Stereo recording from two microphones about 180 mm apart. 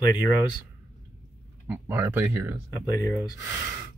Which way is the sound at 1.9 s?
15° right (ahead or behind).